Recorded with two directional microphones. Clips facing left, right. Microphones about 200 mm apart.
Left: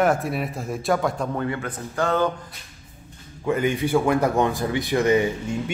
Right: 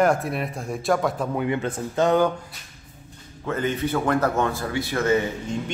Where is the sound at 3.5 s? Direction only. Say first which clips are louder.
Left 3 dB; 15° left (ahead or behind).